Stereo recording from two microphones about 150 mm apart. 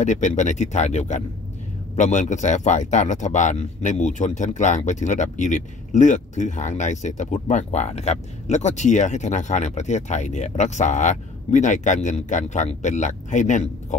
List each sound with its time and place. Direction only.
0.0 s speech: 55° left (ahead or behind)